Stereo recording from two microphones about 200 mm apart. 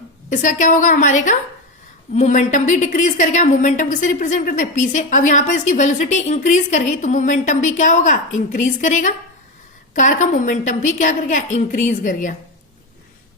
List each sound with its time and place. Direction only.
0.3 s a woman's voice: 40° left (ahead or behind)